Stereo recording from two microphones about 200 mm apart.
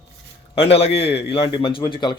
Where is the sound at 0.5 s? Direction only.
30° left (ahead or behind).